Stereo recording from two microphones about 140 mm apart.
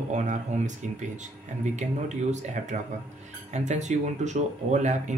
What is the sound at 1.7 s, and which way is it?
Speech, 55° right (ahead or behind).